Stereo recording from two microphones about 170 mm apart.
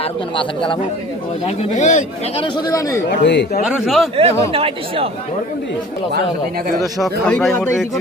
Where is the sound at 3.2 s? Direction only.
90° left.